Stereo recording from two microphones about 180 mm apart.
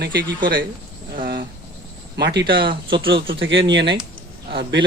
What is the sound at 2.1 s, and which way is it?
Speech, 70° right (ahead or behind).